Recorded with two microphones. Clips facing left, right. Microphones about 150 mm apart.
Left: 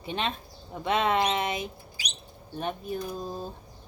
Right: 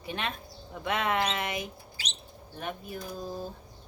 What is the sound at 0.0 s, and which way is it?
Speech, 25° left (ahead or behind).